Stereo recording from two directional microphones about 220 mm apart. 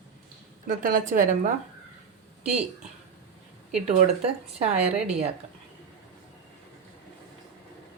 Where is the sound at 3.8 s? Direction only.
30° right (ahead or behind).